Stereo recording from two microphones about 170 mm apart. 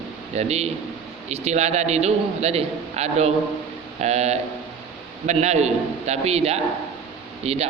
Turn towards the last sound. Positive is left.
turn(degrees=-35)  # may be behind; listen again after turning